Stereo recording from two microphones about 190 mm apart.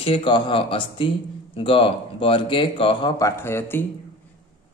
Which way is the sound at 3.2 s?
15° left (ahead or behind).